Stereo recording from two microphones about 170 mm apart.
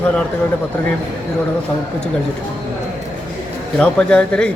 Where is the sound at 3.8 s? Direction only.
5° left (ahead or behind).